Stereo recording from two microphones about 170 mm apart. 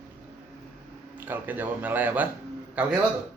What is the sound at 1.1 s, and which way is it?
Speech, 10° right (ahead or behind).